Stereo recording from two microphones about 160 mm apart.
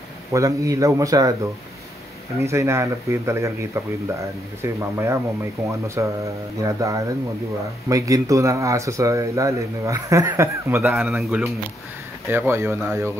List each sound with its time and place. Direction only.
0.3 s speech: 20° right (ahead or behind)
2.4 s speech: 15° right (ahead or behind)
12.3 s speech: 15° right (ahead or behind)